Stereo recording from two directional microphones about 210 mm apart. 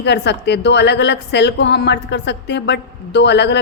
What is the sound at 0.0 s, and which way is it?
A woman's voice, 55° left (ahead or behind).